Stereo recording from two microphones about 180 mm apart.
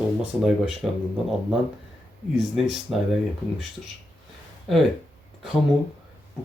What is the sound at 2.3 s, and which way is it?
Speech, centre (ahead or behind).